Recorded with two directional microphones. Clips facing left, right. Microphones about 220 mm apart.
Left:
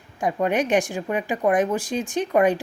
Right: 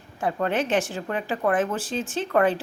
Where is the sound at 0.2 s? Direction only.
15° left (ahead or behind).